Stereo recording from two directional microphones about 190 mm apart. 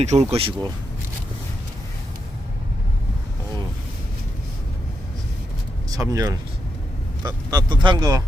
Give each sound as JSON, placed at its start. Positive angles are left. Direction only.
{"t": 0.0, "sound": "speech", "side_deg": -35}
{"t": 5.9, "sound": "speech", "side_deg": -20}